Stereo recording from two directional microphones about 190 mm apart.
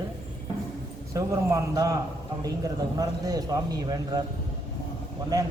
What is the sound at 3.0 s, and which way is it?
A man's voice, 20° right (ahead or behind).